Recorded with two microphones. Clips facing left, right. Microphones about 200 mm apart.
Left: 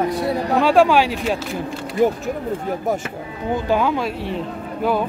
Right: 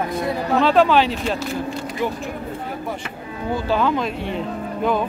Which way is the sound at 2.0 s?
45° left (ahead or behind).